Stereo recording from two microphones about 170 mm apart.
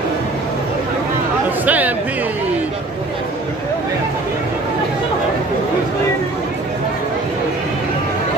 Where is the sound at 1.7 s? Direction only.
10° right (ahead or behind).